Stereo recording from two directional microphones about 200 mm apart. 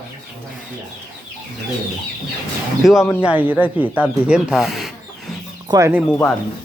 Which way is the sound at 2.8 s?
Centre (ahead or behind).